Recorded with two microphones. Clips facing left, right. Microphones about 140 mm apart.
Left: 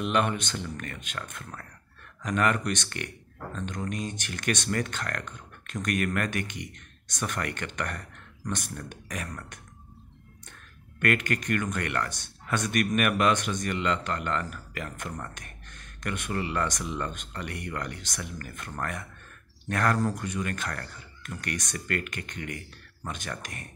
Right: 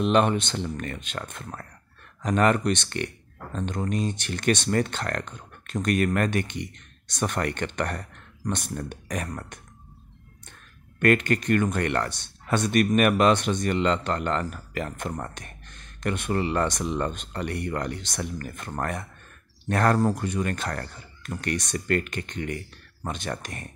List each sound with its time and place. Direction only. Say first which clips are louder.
0.0 s speech: right 5 dB; 30° right (ahead or behind)
11.0 s speech: right 6 dB; 30° right (ahead or behind)